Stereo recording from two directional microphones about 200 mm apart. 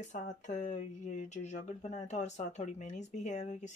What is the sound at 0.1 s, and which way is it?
Speech, 35° left (ahead or behind).